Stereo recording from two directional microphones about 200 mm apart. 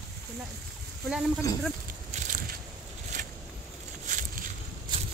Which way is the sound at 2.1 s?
40° right (ahead or behind).